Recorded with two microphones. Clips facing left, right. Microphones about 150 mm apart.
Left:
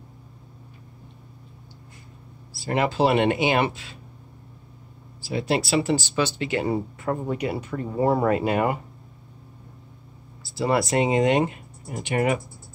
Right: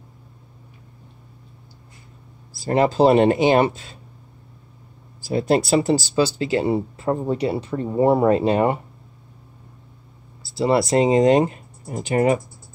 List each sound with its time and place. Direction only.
2.5 s speech: 40° right (ahead or behind)
5.3 s speech: 45° right (ahead or behind)
10.6 s speech: 30° right (ahead or behind)